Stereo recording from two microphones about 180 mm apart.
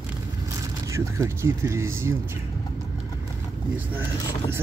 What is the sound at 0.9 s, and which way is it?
Speech, 15° right (ahead or behind).